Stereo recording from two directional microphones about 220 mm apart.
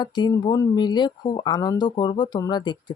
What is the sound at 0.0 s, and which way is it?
Speech, 20° left (ahead or behind).